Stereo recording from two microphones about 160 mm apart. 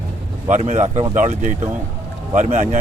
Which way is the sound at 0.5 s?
50° right (ahead or behind).